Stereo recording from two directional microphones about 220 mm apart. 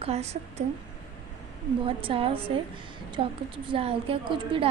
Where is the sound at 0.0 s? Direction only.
30° right (ahead or behind).